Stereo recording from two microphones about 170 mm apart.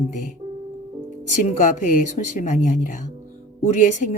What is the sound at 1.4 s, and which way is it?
Speech, 45° left (ahead or behind).